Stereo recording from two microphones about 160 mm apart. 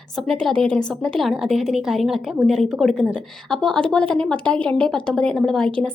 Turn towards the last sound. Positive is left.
turn(degrees=5)  # may be behind; listen again after turning